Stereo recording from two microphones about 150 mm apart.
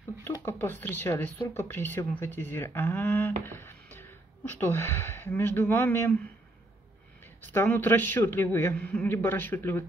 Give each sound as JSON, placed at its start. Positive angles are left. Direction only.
{"t": 0.5, "sound": "a man's voice", "side_deg": 15}
{"t": 3.4, "sound": "music", "side_deg": 15}
{"t": 4.5, "sound": "a man's voice", "side_deg": 15}
{"t": 7.4, "sound": "a man's voice", "side_deg": 15}